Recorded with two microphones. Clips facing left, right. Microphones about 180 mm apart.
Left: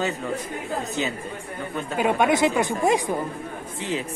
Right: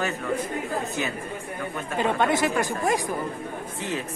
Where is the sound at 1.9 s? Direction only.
10° left (ahead or behind).